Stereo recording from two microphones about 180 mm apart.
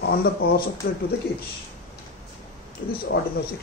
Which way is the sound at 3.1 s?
90° left.